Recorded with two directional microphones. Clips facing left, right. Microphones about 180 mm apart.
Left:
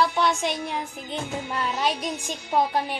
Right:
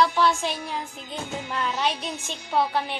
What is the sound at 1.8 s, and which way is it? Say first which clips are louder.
Speech: left 3 dB; 40° left (ahead or behind).